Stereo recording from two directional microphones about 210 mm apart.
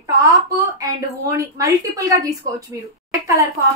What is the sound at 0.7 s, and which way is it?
A woman's voice, 15° right (ahead or behind).